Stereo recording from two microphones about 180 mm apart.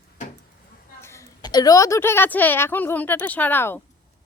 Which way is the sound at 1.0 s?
15° left (ahead or behind).